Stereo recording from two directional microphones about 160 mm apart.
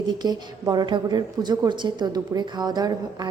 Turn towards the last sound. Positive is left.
turn(degrees=-25)  # may be behind; listen again after turning